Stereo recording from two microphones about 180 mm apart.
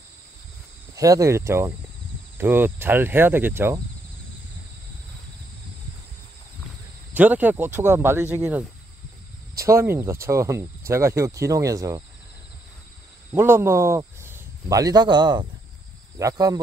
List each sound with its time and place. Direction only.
0.9 s speech: 20° right (ahead or behind)
7.2 s speech: 10° right (ahead or behind)
13.3 s speech: 10° right (ahead or behind)